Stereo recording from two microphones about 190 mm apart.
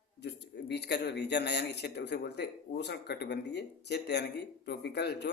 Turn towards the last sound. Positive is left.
turn(degrees=60)  # may be behind; listen again after turning